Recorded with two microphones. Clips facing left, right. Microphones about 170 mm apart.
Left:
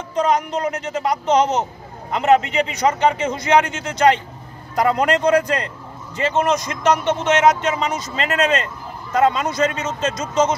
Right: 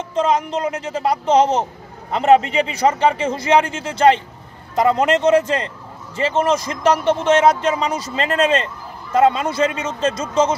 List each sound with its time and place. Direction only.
0.1 s a man's voice: 25° right (ahead or behind)